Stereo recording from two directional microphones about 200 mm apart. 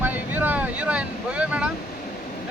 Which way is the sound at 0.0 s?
10° right (ahead or behind).